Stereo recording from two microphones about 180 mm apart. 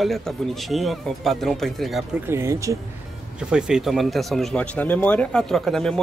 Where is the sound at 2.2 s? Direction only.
15° right (ahead or behind).